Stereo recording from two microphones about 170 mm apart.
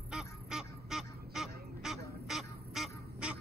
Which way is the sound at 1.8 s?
5° right (ahead or behind).